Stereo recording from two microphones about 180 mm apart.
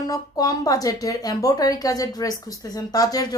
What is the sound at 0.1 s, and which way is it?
A woman's voice, 20° left (ahead or behind).